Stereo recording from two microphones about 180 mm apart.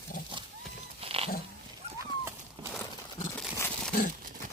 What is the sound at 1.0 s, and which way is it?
Dog, 30° right (ahead or behind).